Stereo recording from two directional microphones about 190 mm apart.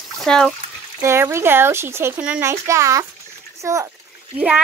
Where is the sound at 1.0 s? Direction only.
15° right (ahead or behind).